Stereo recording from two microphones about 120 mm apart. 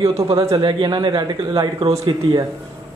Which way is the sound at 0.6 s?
35° right (ahead or behind).